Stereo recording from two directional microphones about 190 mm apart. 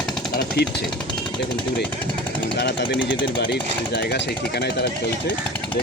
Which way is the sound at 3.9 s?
65° left (ahead or behind).